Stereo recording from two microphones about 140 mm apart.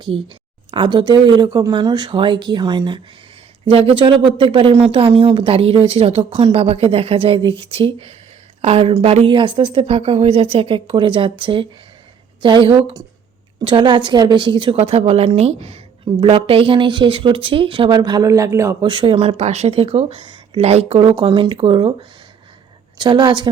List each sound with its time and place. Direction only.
0.7 s a woman's voice: 40° right (ahead or behind); by 18.8 s 20° right (ahead or behind)
18.8 s a woman's voice: 35° right (ahead or behind)
23.0 s a woman's voice: 30° right (ahead or behind)